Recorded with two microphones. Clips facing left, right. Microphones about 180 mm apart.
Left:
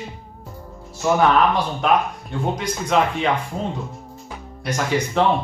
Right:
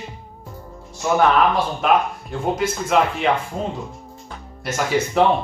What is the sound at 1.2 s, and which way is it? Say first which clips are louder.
Speech: right 1 dB; centre (ahead or behind).